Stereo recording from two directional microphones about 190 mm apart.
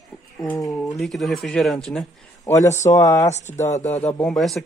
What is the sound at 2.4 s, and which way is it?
Speech, 15° left (ahead or behind).